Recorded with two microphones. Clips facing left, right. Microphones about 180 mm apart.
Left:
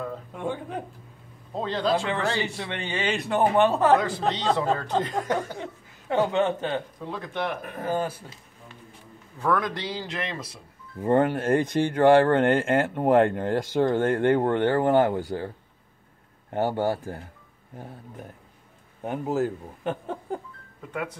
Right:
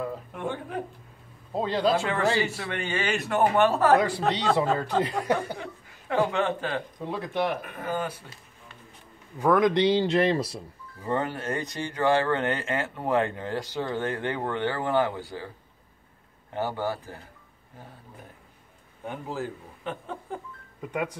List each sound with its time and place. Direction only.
0.4 s speech: 15° left (ahead or behind)
1.5 s speech: 10° right (ahead or behind)
2.5 s a man's voice: 20° left (ahead or behind)
4.7 s speech: 10° right (ahead or behind)
5.6 s speech: 25° left (ahead or behind)
7.0 s speech: 10° right (ahead or behind)
7.6 s speech: 35° left (ahead or behind)
9.4 s speech: 15° right (ahead or behind)
9.9 s speech: 30° right (ahead or behind)
11.0 s speech: 55° left (ahead or behind)
16.5 s speech: 50° left (ahead or behind)
19.0 s speech: 45° left (ahead or behind)
20.9 s speech: 15° right (ahead or behind)